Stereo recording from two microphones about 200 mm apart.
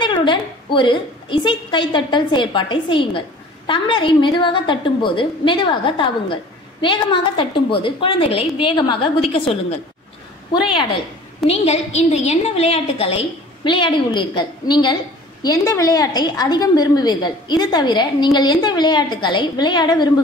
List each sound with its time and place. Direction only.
0.0 s a woman's voice: 25° left (ahead or behind)
11.4 s a woman's voice: 30° left (ahead or behind)